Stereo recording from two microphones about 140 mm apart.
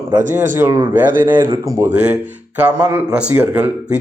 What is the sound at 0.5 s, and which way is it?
Speech, 20° right (ahead or behind).